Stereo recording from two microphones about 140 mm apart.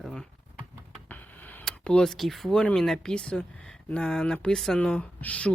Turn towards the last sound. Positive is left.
turn(degrees=10)  # may be behind; listen again after turning